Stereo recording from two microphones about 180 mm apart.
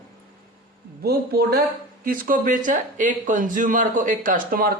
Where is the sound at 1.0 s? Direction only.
60° right (ahead or behind).